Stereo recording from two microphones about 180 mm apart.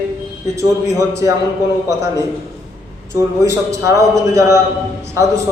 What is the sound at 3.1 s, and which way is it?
A man's voice, 15° right (ahead or behind).